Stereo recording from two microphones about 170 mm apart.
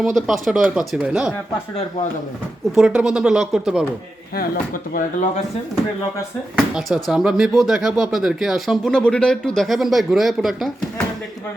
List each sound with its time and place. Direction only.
0.0 s speech: centre (ahead or behind)
2.7 s speech: 5° right (ahead or behind)
4.4 s speech: 55° left (ahead or behind)
6.7 s speech: 5° right (ahead or behind)